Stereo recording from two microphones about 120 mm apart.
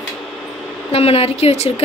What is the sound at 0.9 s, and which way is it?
Speech, 55° left (ahead or behind).